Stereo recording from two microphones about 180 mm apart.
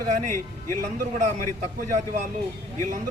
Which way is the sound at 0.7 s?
50° right (ahead or behind).